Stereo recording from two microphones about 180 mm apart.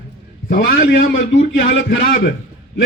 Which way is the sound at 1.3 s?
90° left.